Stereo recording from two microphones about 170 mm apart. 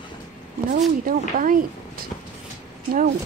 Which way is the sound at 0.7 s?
50° right (ahead or behind).